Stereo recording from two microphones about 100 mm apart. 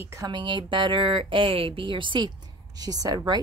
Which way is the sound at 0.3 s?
50° right (ahead or behind).